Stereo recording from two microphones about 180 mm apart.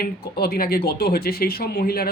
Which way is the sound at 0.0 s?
55° left (ahead or behind).